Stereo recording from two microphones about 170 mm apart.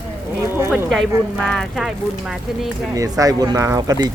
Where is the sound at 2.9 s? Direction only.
20° right (ahead or behind).